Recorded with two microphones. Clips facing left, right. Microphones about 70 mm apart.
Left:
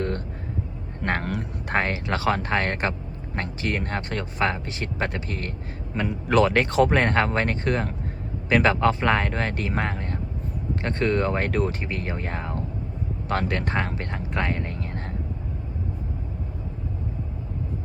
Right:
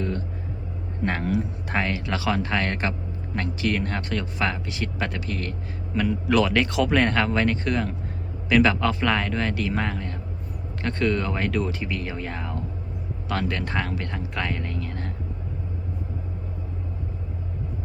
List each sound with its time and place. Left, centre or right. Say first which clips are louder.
1.0 s speech: right 2 dB; left
1.6 s speech: left 1 dB; left